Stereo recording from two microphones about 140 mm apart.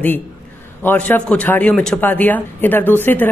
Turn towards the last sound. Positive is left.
turn(degrees=15)  # may be behind; listen again after turning